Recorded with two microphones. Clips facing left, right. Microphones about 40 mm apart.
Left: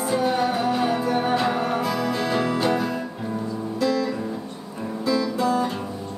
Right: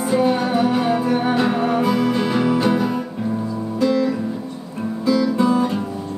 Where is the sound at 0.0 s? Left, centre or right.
Centre.